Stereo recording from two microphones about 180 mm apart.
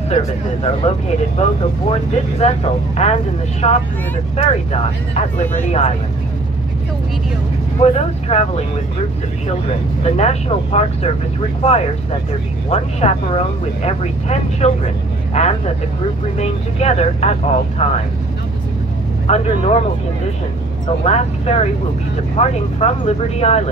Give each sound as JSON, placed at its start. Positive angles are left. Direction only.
{"t": 1.4, "sound": "speech", "side_deg": 35}
{"t": 5.1, "sound": "speech", "side_deg": 40}
{"t": 7.8, "sound": "speech", "side_deg": 35}
{"t": 10.0, "sound": "speech", "side_deg": 35}
{"t": 19.2, "sound": "speech", "side_deg": 35}
{"t": 21.0, "sound": "speech", "side_deg": 35}